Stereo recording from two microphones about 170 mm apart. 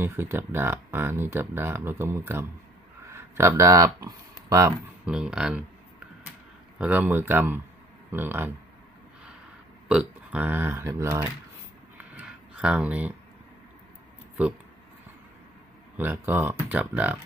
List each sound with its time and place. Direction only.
0.0 s speech: 15° right (ahead or behind)
6.8 s speech: 10° right (ahead or behind)
9.8 s speech: 5° right (ahead or behind)
12.0 s a sound: 10° right (ahead or behind)
16.0 s speech: 10° right (ahead or behind)